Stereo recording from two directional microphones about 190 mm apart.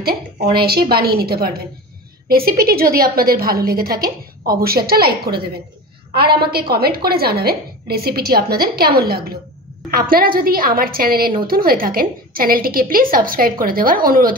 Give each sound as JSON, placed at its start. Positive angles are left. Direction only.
{"t": 0.0, "sound": "a woman's voice", "side_deg": -55}
{"t": 6.5, "sound": "a woman's voice", "side_deg": -55}